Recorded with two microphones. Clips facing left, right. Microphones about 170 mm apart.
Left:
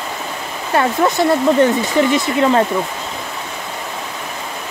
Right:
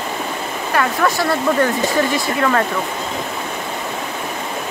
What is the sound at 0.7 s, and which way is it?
Speech, 20° left (ahead or behind).